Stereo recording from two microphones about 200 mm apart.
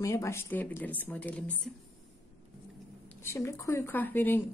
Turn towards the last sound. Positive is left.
turn(degrees=10)  # may be behind; listen again after turning